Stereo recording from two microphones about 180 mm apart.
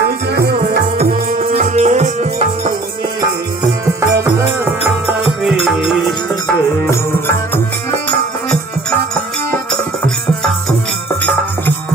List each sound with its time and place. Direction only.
0.3 s music: 60° right (ahead or behind); by 2.7 s 40° right (ahead or behind)
3.8 s music: 15° right (ahead or behind)
5.4 s music: centre (ahead or behind)
6.9 s music: 15° left (ahead or behind)